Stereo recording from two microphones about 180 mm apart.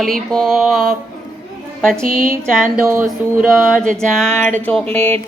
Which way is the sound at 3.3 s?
5° right (ahead or behind).